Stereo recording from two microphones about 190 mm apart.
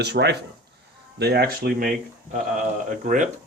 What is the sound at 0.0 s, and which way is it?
Speech, 60° right (ahead or behind).